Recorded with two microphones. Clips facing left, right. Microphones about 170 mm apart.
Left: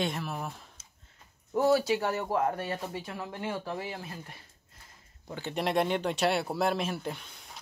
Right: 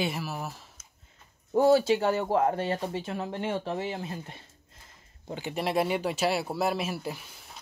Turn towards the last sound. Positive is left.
turn(degrees=-5)  # may be behind; listen again after turning